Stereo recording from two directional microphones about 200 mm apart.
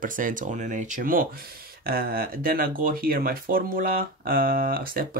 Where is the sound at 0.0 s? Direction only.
40° right (ahead or behind).